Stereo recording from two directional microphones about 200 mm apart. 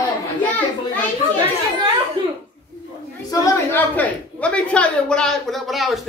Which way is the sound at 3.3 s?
10° left (ahead or behind).